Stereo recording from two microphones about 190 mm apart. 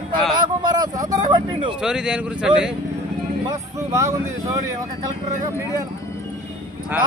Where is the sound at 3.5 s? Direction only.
15° right (ahead or behind).